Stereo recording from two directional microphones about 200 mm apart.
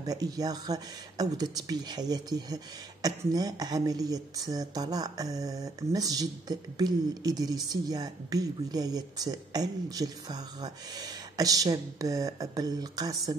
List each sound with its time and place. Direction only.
0.0 s speech: 20° right (ahead or behind)